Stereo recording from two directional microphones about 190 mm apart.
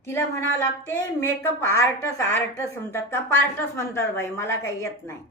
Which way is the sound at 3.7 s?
15° left (ahead or behind).